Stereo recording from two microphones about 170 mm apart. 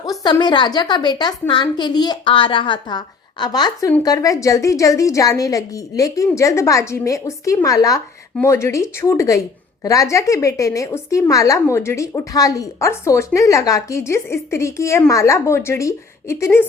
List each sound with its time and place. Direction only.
0.0 s a woman's voice: 20° left (ahead or behind)